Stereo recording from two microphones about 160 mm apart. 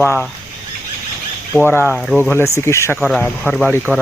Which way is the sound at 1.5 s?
10° left (ahead or behind).